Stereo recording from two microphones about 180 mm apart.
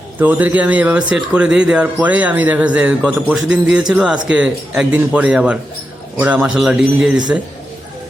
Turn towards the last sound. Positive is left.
turn(degrees=-5)  # may be behind; listen again after turning